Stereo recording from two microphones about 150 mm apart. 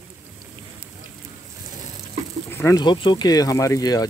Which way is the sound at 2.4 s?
15° left (ahead or behind).